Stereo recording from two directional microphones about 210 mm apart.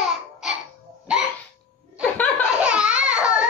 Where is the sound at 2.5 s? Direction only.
5° right (ahead or behind).